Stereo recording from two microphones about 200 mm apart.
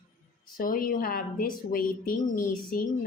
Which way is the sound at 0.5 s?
45° left (ahead or behind).